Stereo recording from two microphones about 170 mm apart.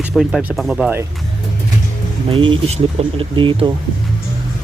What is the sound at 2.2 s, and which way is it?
Speech, 30° right (ahead or behind).